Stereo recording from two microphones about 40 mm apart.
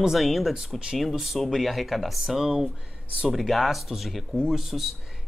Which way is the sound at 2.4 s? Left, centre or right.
Centre.